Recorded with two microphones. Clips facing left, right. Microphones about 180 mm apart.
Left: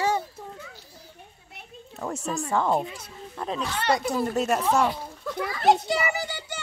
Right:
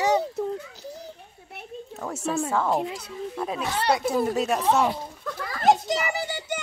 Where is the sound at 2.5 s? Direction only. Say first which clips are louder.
Left 4 dB; 5° right (ahead or behind).